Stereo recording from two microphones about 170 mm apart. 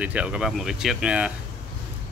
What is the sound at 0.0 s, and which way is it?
Speech, 5° right (ahead or behind).